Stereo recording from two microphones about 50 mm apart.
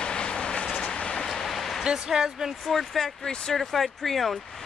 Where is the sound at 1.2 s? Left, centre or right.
Centre.